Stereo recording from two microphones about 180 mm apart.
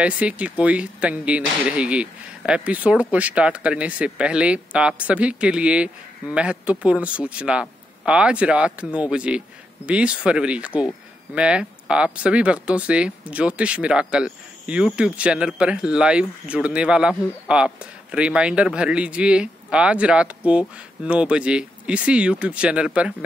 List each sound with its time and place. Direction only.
0.0 s speech: 5° right (ahead or behind)